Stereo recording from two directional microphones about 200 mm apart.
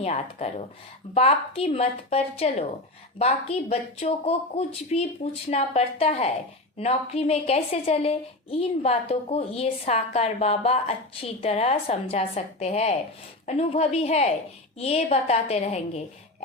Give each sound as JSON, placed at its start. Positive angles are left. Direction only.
{"t": 0.0, "sound": "a woman's voice", "side_deg": 30}